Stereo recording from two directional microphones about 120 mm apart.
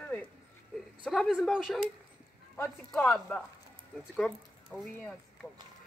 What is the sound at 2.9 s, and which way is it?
Speech, 5° left (ahead or behind).